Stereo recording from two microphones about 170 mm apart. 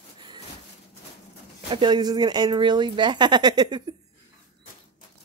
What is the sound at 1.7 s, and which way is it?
Speech, 25° right (ahead or behind).